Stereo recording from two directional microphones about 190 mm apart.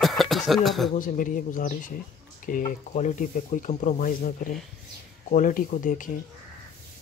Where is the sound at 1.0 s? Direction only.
45° left (ahead or behind).